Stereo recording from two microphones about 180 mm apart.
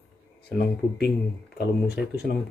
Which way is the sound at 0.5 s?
65° left (ahead or behind).